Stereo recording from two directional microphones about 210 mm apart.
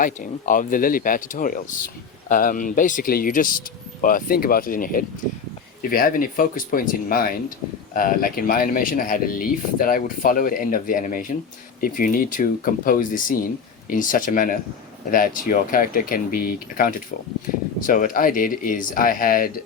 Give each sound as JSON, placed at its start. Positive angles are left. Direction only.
{"t": 0.0, "sound": "speech", "side_deg": 40}